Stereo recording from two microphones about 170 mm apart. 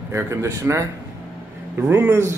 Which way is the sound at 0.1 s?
15° right (ahead or behind).